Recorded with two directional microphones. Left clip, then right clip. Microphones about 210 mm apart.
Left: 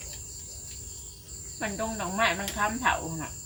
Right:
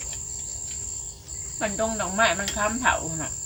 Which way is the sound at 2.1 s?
15° right (ahead or behind).